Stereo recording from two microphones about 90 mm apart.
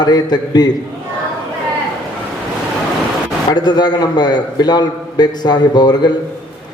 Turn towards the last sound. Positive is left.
turn(degrees=50)  # may be behind; listen again after turning